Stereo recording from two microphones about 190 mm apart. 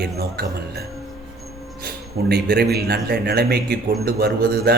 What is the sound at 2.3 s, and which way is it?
A man's voice, 55° right (ahead or behind).